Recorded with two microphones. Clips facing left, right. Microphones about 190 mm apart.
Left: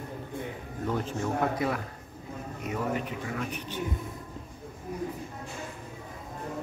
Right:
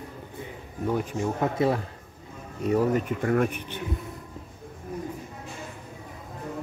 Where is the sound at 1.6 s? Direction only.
25° right (ahead or behind).